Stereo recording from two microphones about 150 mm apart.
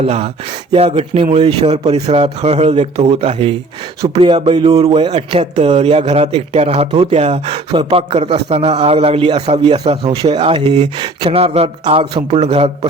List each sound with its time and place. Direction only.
0.0 s speech: 45° right (ahead or behind)